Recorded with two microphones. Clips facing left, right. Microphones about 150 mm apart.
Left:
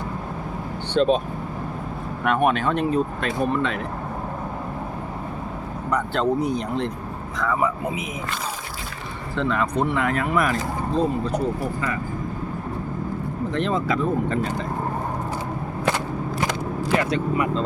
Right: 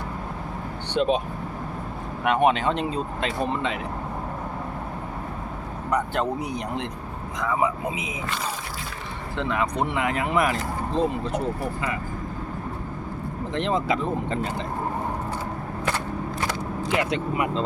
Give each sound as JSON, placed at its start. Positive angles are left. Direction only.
{"t": 1.0, "sound": "speech", "side_deg": -10}
{"t": 2.2, "sound": "speech", "side_deg": -20}
{"t": 5.9, "sound": "speech", "side_deg": -15}
{"t": 9.3, "sound": "speech", "side_deg": -15}
{"t": 13.5, "sound": "speech", "side_deg": -20}
{"t": 17.0, "sound": "speech", "side_deg": -20}